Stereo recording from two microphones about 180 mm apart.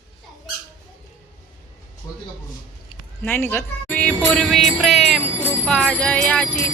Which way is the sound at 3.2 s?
10° left (ahead or behind).